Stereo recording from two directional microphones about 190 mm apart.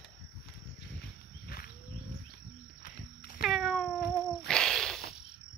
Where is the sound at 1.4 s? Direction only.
50° left (ahead or behind).